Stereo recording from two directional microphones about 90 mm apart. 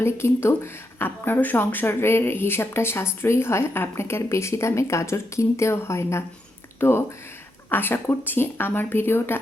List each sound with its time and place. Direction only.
0.0 s speech: 30° left (ahead or behind)